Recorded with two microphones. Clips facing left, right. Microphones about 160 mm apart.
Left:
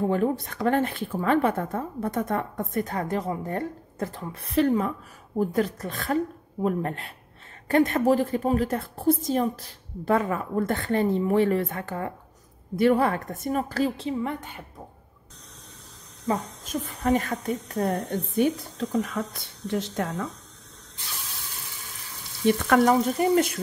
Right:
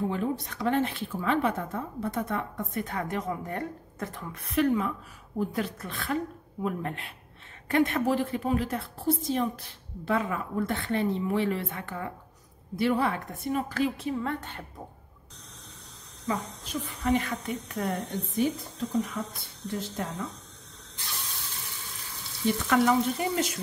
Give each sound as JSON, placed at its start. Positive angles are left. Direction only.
{"t": 0.1, "sound": "speech", "side_deg": 50}
{"t": 14.0, "sound": "a woman's voice", "side_deg": 15}
{"t": 16.3, "sound": "speech", "side_deg": 45}
{"t": 18.4, "sound": "speech", "side_deg": 80}
{"t": 22.5, "sound": "speech", "side_deg": 50}